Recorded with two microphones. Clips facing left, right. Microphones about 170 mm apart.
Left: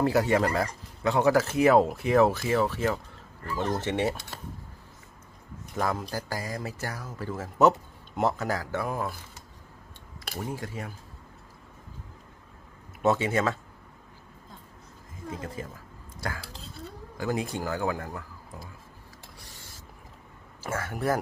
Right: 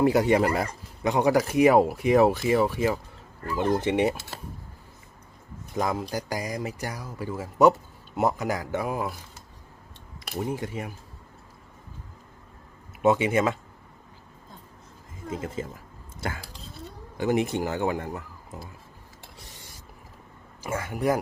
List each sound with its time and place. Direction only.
0.0 s speech: 20° right (ahead or behind)
5.7 s speech: 15° right (ahead or behind)
10.5 s speech: 20° right (ahead or behind)
13.0 s speech: 15° right (ahead or behind)
15.3 s speech: 25° right (ahead or behind)
20.6 s speech: 15° right (ahead or behind)